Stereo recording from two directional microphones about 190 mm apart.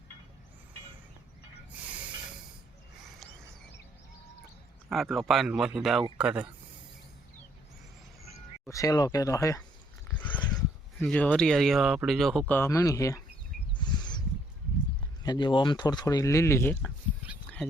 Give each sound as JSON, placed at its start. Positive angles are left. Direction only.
{"t": 4.9, "sound": "speech", "side_deg": 0}
{"t": 8.6, "sound": "speech", "side_deg": 15}
{"t": 10.2, "sound": "a sound", "side_deg": 10}
{"t": 11.0, "sound": "speech", "side_deg": 5}
{"t": 13.7, "sound": "a sound", "side_deg": 25}
{"t": 15.2, "sound": "speech", "side_deg": 25}